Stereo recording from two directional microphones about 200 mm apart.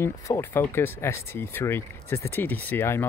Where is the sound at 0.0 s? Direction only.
10° left (ahead or behind).